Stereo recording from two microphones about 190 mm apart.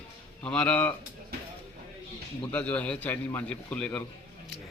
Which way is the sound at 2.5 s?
10° left (ahead or behind).